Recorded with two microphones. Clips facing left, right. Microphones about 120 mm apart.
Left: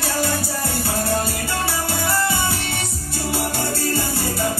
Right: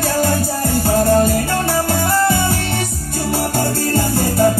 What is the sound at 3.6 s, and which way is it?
Music, 50° right (ahead or behind).